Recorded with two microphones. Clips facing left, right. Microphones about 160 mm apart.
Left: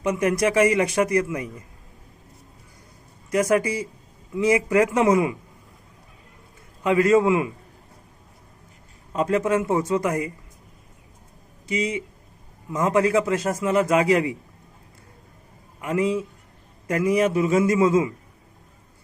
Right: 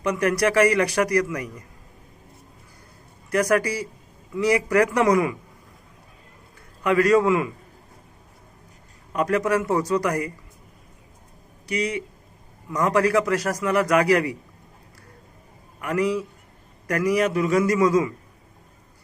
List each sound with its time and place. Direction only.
0.0 s a man's voice: 20° left (ahead or behind)
3.2 s a man's voice: 20° left (ahead or behind)
6.8 s a man's voice: 20° left (ahead or behind)
9.1 s a man's voice: 25° left (ahead or behind)
11.6 s a man's voice: 20° left (ahead or behind)
15.8 s a man's voice: 20° left (ahead or behind)